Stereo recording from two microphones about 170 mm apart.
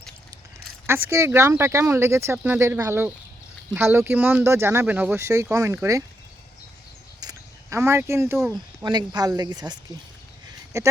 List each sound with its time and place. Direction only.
0.9 s speech: 15° right (ahead or behind)
7.2 s a sound: 20° right (ahead or behind)
8.5 s speech: 25° right (ahead or behind)